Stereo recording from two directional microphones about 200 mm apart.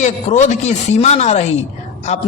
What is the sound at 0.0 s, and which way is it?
A man's voice, 35° left (ahead or behind).